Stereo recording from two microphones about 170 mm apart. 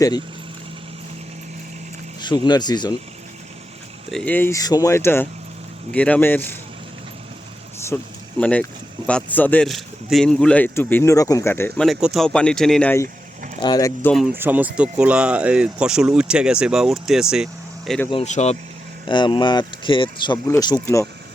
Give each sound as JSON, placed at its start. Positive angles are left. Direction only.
{"t": 2.2, "sound": "speech", "side_deg": 25}
{"t": 4.1, "sound": "a man's voice", "side_deg": 5}
{"t": 7.9, "sound": "a man's voice", "side_deg": 10}
{"t": 11.8, "sound": "speech", "side_deg": 0}
{"t": 13.6, "sound": "speech", "side_deg": 25}
{"t": 14.3, "sound": "speech", "side_deg": -10}
{"t": 18.1, "sound": "speech", "side_deg": 40}
{"t": 19.0, "sound": "speech", "side_deg": 30}